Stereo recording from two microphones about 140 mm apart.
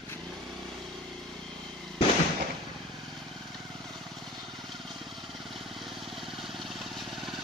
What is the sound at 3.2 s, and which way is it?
Vehicle, centre (ahead or behind).